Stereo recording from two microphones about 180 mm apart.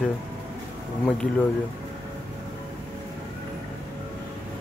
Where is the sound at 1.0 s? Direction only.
5° left (ahead or behind).